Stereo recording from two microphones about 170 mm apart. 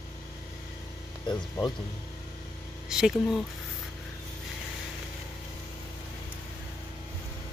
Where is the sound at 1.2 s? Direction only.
25° left (ahead or behind).